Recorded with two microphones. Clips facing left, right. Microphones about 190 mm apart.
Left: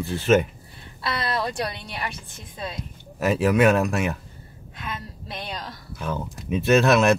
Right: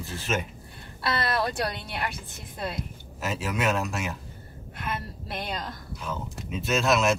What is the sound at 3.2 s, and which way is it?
Speech, 60° left (ahead or behind).